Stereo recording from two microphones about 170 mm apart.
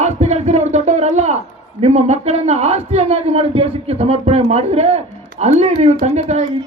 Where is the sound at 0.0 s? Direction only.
40° right (ahead or behind).